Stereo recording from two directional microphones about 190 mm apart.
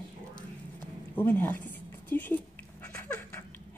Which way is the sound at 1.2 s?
10° left (ahead or behind).